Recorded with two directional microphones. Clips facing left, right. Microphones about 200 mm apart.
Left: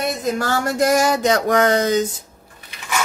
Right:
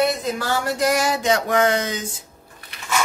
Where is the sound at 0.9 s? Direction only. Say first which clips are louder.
Left 3 dB; 45° left (ahead or behind).